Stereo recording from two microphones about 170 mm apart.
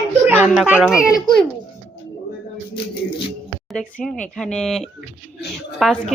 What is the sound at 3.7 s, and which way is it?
Speech, 5° left (ahead or behind).